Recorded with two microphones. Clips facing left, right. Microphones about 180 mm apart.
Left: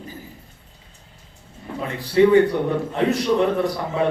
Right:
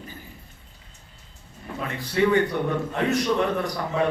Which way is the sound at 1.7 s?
25° left (ahead or behind).